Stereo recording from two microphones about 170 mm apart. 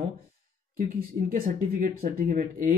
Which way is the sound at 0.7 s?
55° right (ahead or behind).